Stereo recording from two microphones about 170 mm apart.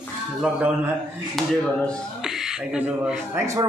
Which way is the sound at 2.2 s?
Centre (ahead or behind).